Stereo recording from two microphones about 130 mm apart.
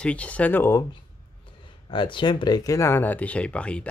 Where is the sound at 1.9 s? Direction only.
40° left (ahead or behind).